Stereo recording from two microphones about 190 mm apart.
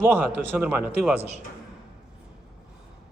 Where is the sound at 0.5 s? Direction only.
10° right (ahead or behind).